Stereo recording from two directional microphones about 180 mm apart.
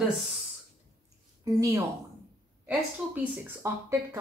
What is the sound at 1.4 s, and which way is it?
A woman's voice, 20° right (ahead or behind).